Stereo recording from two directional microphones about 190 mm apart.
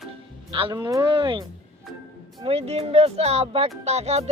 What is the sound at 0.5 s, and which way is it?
Speech, 25° right (ahead or behind).